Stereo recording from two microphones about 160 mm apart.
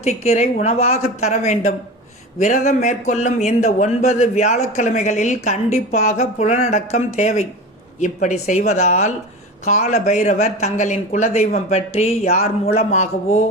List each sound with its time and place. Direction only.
0.0 s speech: 45° left (ahead or behind)